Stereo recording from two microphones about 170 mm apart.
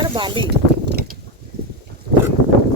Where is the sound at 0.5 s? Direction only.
70° right (ahead or behind).